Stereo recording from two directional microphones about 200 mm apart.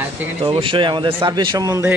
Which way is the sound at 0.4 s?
25° right (ahead or behind).